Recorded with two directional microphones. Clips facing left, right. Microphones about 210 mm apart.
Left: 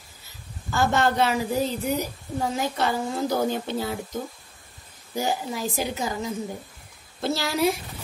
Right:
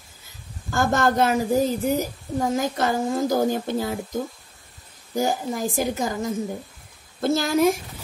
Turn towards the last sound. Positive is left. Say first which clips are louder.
# right 4 dB
turn(degrees=-50)  # may be behind; listen again after turning